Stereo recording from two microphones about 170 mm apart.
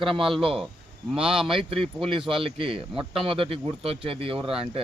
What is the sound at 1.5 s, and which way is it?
Speech, 30° right (ahead or behind).